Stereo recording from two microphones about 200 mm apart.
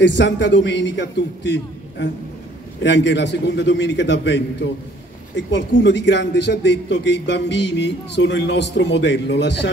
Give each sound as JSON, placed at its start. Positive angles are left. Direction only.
{"t": 0.0, "sound": "a man's voice", "side_deg": 60}